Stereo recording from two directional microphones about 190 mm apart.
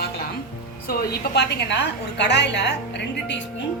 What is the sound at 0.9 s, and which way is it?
A woman's voice, 60° left (ahead or behind).